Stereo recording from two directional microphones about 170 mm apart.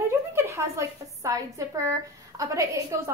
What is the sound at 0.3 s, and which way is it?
A woman's voice, 15° right (ahead or behind).